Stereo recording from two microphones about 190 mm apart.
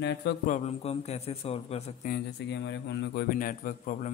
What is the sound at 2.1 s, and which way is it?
A man's voice, 65° left (ahead or behind).